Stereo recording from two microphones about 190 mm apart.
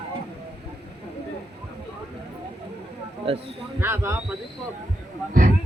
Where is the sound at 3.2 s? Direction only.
30° right (ahead or behind).